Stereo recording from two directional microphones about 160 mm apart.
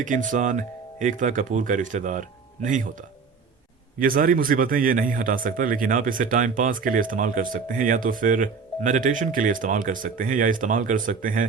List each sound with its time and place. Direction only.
0.0 s speech: 55° right (ahead or behind)
4.0 s speech: 65° right (ahead or behind)